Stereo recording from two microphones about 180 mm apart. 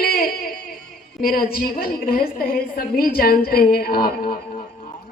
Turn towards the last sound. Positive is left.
turn(degrees=55)  # may be behind; listen again after turning